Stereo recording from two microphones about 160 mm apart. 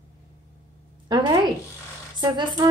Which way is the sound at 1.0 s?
25° right (ahead or behind).